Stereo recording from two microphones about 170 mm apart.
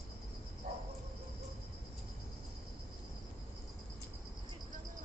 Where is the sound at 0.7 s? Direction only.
60° right (ahead or behind).